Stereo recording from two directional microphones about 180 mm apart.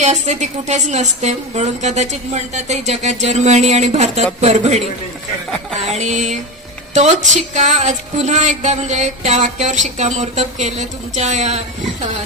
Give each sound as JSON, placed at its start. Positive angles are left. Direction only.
{"t": 0.0, "sound": "a woman's voice", "side_deg": -40}
{"t": 5.9, "sound": "a woman's voice", "side_deg": -40}